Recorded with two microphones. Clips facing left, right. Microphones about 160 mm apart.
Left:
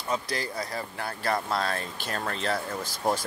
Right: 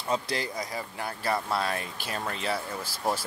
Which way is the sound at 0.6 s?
15° right (ahead or behind).